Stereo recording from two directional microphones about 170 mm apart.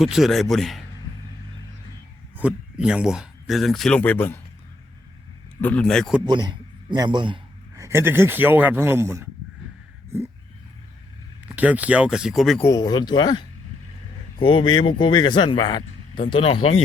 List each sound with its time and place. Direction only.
0.0 s a man's voice: centre (ahead or behind)
2.7 s a man's voice: 5° right (ahead or behind); by 4.4 s 10° left (ahead or behind)
5.5 s a man's voice: 10° left (ahead or behind)
6.2 s a man's voice: 25° right (ahead or behind)
7.8 s speech: 15° right (ahead or behind)
11.5 s speech: 10° right (ahead or behind)
12.6 s speech: 20° left (ahead or behind)